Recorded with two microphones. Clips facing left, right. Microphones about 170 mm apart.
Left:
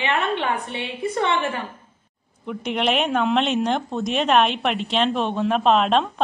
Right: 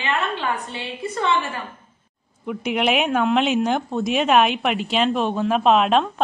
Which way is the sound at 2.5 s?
5° right (ahead or behind).